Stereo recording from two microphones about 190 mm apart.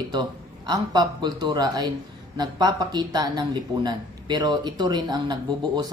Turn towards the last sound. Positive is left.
turn(degrees=-20)  # may be behind; listen again after turning